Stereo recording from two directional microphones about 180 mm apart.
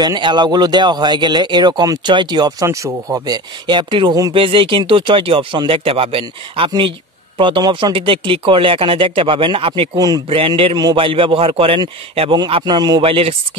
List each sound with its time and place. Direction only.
0.0 s speech: 25° right (ahead or behind)